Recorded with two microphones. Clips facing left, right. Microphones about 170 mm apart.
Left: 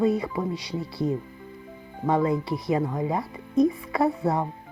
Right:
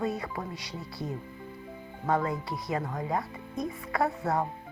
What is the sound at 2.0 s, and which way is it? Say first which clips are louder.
Speech: left 6 dB; 20° left (ahead or behind).